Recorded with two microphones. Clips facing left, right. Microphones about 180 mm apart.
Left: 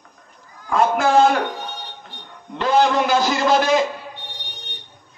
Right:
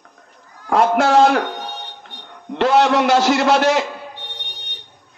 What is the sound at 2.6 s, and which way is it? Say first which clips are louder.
A man's voice: right 3 dB; 70° right (ahead or behind).